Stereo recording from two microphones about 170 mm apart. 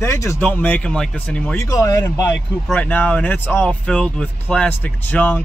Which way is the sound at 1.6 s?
15° left (ahead or behind).